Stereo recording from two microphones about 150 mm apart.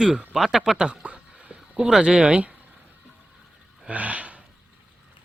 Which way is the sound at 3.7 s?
10° right (ahead or behind).